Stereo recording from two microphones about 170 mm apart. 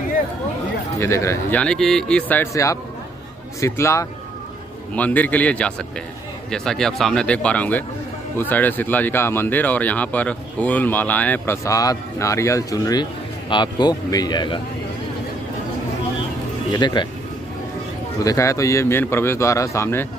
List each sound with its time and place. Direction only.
0.9 s a man's voice: 15° left (ahead or behind)
16.7 s speech: 25° left (ahead or behind)
18.2 s speech: 20° left (ahead or behind)